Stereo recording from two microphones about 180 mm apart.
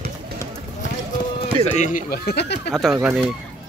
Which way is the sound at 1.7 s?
45° left (ahead or behind).